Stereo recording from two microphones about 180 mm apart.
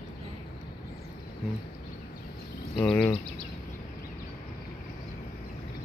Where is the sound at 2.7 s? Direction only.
5° left (ahead or behind).